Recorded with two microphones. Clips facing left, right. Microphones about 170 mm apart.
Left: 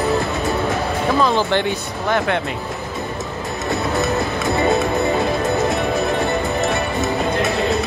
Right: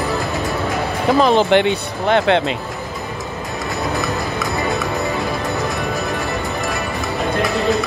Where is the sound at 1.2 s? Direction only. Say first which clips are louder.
Right 6 dB; 20° right (ahead or behind).